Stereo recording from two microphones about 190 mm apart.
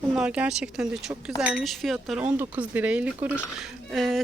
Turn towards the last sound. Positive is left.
turn(degrees=0)  # may be behind; listen again after turning